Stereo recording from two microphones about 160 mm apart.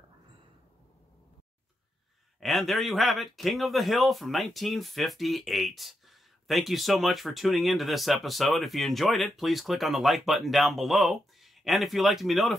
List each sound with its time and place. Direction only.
2.4 s speech: centre (ahead or behind)